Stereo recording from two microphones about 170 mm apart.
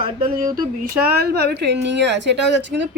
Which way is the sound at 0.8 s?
65° right (ahead or behind).